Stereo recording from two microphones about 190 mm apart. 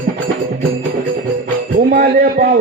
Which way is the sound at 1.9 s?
50° right (ahead or behind).